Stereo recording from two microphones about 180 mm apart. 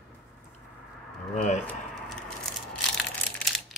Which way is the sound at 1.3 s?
40° left (ahead or behind).